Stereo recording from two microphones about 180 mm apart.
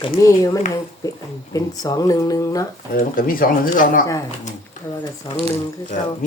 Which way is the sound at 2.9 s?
50° left (ahead or behind).